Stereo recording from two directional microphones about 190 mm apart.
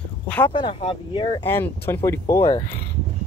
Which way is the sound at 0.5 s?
25° left (ahead or behind).